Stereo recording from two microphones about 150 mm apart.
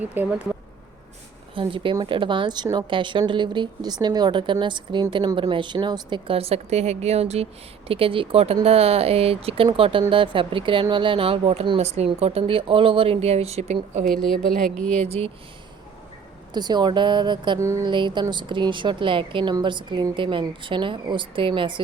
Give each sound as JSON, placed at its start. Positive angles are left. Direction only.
{"t": 0.0, "sound": "speech", "side_deg": -10}
{"t": 1.5, "sound": "speech", "side_deg": -35}
{"t": 11.8, "sound": "speech", "side_deg": -45}
{"t": 14.0, "sound": "a woman's voice", "side_deg": 0}
{"t": 15.0, "sound": "speech", "side_deg": -45}
{"t": 16.5, "sound": "speech", "side_deg": -30}
{"t": 17.6, "sound": "speech", "side_deg": -20}
{"t": 17.8, "sound": "speech", "side_deg": -30}